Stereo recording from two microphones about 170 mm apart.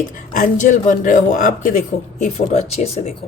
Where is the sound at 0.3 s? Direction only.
50° left (ahead or behind).